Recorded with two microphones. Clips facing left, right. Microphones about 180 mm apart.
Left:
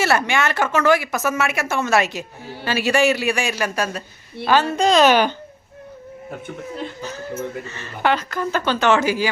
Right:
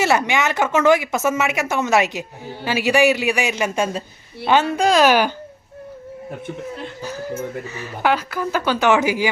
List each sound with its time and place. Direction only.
0.0 s speech: 15° right (ahead or behind)
7.7 s speech: 10° right (ahead or behind)